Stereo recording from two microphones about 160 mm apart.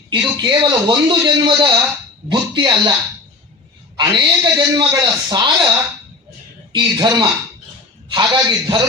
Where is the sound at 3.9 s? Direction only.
30° right (ahead or behind).